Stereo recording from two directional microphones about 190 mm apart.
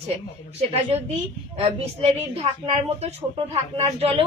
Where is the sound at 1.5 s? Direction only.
30° right (ahead or behind).